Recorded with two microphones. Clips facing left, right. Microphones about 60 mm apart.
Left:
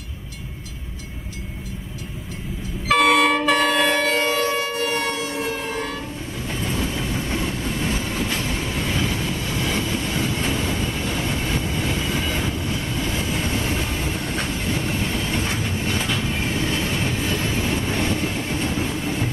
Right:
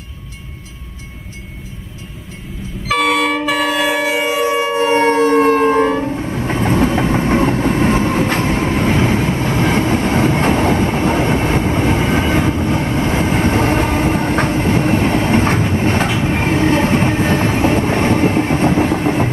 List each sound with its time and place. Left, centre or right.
2.9 s train: centre; by 5.9 s right
5.9 s train: right
6.1 s train: right